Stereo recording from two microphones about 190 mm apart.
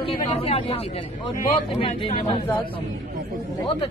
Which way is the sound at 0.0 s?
30° left (ahead or behind).